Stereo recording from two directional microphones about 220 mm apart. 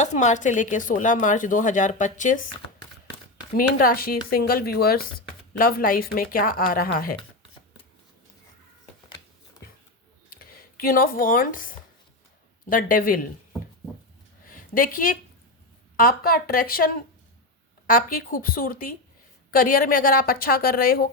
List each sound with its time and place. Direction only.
0.0 s speech: 30° left (ahead or behind)
3.6 s speech: 40° left (ahead or behind)
10.2 s a sound: 40° left (ahead or behind)
12.6 s speech: 40° left (ahead or behind)
14.4 s a sound: 40° left (ahead or behind)
16.0 s speech: 40° left (ahead or behind)